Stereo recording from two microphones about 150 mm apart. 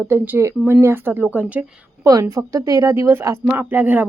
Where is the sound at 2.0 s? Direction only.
20° right (ahead or behind).